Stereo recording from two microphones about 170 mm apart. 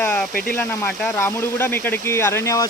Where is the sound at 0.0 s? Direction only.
5° left (ahead or behind).